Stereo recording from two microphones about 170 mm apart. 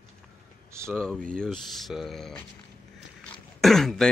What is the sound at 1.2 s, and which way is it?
Speech, 5° left (ahead or behind).